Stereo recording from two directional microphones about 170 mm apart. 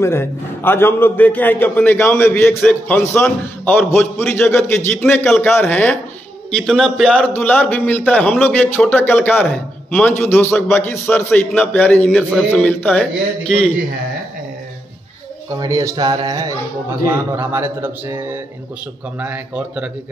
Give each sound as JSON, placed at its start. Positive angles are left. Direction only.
{"t": 0.0, "sound": "a man's voice", "side_deg": 15}
{"t": 15.5, "sound": "speech", "side_deg": -20}